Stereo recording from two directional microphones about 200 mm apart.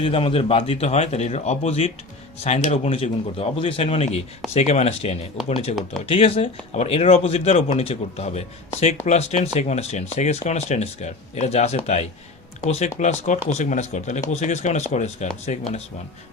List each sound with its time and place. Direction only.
0.0 s speech: 25° left (ahead or behind)